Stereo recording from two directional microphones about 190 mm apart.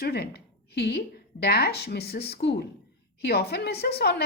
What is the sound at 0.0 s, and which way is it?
A woman's voice, 55° left (ahead or behind).